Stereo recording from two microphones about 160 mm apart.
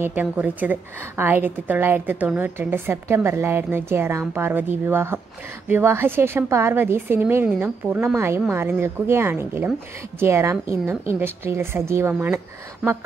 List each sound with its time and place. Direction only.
0.0 s a woman's voice: 10° right (ahead or behind)